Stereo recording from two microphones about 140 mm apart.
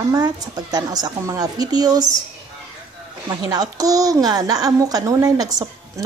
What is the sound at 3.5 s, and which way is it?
A child's voice, 25° right (ahead or behind).